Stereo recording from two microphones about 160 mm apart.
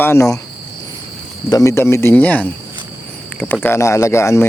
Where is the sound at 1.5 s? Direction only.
20° left (ahead or behind).